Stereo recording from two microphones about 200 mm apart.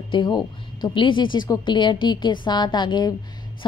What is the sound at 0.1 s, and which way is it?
A woman's voice, 20° left (ahead or behind).